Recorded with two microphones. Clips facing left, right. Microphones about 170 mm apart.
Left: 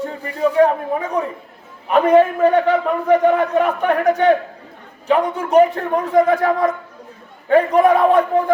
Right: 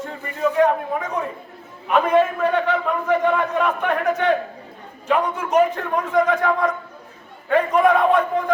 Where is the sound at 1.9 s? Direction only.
35° left (ahead or behind).